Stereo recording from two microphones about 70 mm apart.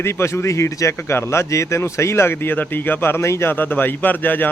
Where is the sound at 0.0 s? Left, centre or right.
Left.